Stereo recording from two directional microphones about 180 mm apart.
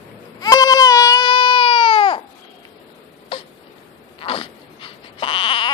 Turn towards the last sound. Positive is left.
turn(degrees=30)  # may be behind; listen again after turning